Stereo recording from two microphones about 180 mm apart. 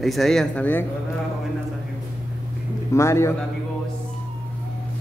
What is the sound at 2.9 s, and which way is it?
Speech, 15° left (ahead or behind).